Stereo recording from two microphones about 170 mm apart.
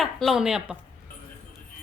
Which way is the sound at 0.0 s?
Centre (ahead or behind).